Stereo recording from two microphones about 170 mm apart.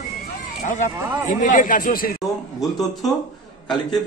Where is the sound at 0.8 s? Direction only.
50° left (ahead or behind).